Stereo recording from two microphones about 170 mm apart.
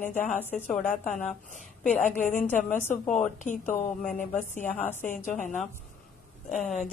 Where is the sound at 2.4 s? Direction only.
10° left (ahead or behind).